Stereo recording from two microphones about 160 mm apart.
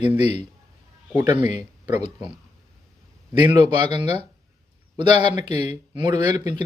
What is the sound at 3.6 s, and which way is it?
Speech, 40° left (ahead or behind).